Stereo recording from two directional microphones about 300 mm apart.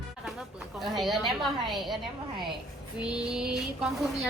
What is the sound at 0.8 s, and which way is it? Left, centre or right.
A woman's voice, centre.